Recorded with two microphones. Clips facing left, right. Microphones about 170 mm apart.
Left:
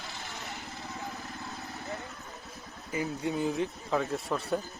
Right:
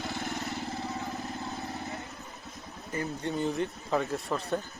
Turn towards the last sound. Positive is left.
turn(degrees=0)  # may be behind; listen again after turning